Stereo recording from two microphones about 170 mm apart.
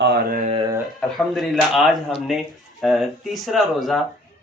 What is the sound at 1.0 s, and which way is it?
Speech, 5° left (ahead or behind).